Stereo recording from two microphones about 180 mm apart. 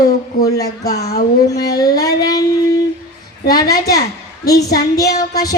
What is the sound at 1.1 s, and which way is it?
Speech, 60° left (ahead or behind).